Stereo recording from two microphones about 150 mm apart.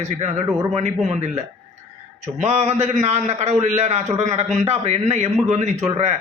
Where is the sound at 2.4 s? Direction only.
45° right (ahead or behind).